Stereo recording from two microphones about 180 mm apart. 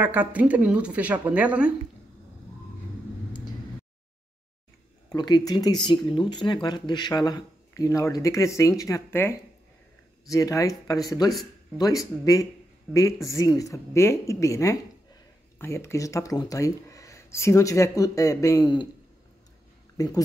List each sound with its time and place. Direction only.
0.0 s speech: 10° right (ahead or behind)
5.1 s speech: 20° left (ahead or behind)
20.0 s speech: 20° left (ahead or behind)